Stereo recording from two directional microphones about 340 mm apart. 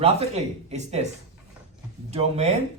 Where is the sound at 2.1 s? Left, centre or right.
Centre.